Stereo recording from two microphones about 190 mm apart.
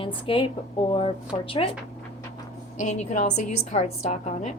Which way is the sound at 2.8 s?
40° left (ahead or behind).